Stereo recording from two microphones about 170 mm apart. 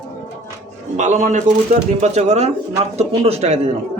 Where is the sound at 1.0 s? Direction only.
45° right (ahead or behind).